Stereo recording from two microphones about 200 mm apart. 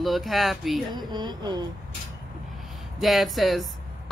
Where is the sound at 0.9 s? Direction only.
20° right (ahead or behind).